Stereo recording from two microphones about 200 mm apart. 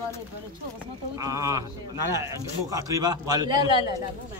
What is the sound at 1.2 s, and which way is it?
A man's voice, 15° right (ahead or behind).